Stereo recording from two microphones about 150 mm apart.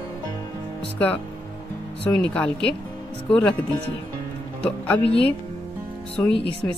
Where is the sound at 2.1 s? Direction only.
5° left (ahead or behind).